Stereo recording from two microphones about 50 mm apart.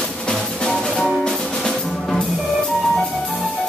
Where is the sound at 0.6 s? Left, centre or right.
Centre.